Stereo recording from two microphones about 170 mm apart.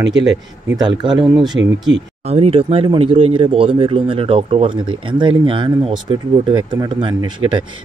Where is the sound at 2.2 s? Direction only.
35° right (ahead or behind).